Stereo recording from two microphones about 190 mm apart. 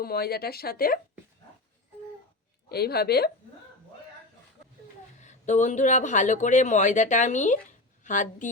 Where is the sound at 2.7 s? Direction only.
55° left (ahead or behind).